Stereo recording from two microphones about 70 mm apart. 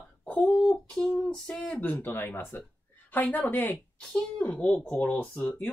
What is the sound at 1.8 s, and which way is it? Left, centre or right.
Speech, left.